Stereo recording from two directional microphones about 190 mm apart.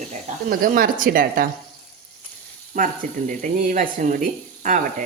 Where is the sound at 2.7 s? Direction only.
45° right (ahead or behind).